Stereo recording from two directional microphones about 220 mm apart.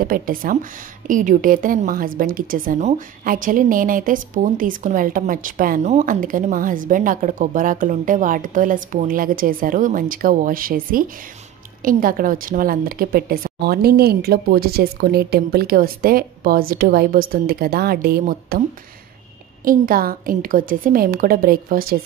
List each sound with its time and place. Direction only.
0.0 s a woman's voice: 40° right (ahead or behind)
19.6 s a woman's voice: 40° right (ahead or behind)